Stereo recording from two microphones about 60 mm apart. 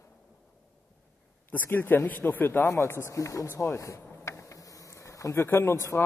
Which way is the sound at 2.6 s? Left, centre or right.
Left.